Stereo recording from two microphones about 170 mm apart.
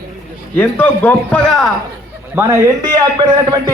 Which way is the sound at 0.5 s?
10° left (ahead or behind).